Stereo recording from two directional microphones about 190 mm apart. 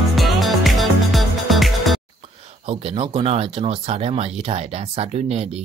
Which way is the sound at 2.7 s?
30° right (ahead or behind).